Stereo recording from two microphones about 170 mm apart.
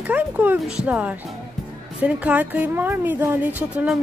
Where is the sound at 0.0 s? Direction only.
10° right (ahead or behind).